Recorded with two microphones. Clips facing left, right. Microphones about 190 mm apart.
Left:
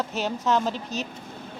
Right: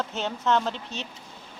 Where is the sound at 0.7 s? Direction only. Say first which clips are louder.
Left 5 dB; 25° right (ahead or behind).